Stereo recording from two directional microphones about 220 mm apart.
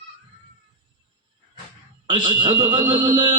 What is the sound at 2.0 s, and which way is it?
A man's voice, 20° right (ahead or behind).